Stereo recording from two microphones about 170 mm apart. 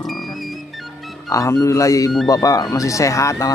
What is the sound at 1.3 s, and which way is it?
Speech, 20° left (ahead or behind).